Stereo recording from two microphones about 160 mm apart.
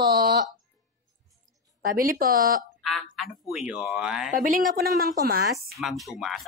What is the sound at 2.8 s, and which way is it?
Livestock, centre (ahead or behind).